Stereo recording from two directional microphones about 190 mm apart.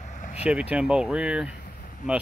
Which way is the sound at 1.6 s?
45° left (ahead or behind).